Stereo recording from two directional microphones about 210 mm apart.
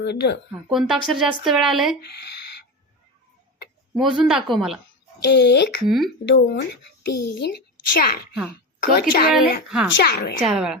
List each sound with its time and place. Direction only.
0.0 s a woman's voice: 55° left (ahead or behind)
0.7 s speech: centre (ahead or behind)
2.0 s a sound: 50° left (ahead or behind)
3.9 s speech: centre (ahead or behind)
5.2 s a woman's voice: 55° left (ahead or behind)
9.6 s speech: 5° right (ahead or behind)
10.0 s a woman's voice: 50° left (ahead or behind)
10.4 s speech: 5° right (ahead or behind)